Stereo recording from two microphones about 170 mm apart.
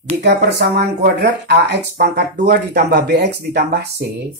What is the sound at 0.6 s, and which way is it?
Speech, 75° right (ahead or behind).